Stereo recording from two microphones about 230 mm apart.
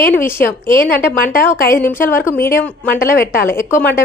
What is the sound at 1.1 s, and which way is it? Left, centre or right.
Speech, left.